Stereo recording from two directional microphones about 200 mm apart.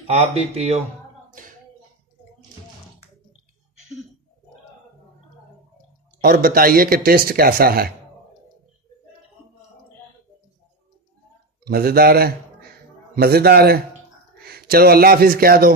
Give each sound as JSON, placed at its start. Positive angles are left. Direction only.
{"t": 0.0, "sound": "speech", "side_deg": -30}
{"t": 1.4, "sound": "tap", "side_deg": -40}
{"t": 6.2, "sound": "speech", "side_deg": -45}
{"t": 11.6, "sound": "a man's voice", "side_deg": -50}